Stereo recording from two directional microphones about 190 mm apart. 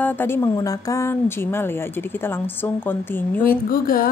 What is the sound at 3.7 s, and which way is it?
Speech, 50° left (ahead or behind).